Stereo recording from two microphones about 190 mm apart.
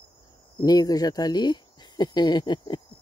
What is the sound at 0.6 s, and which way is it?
Speech, 20° left (ahead or behind).